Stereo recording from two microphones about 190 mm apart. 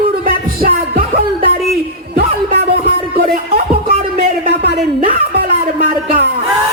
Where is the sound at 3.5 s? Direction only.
55° right (ahead or behind).